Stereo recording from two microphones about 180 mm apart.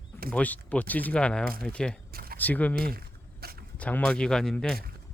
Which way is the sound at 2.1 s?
55° right (ahead or behind).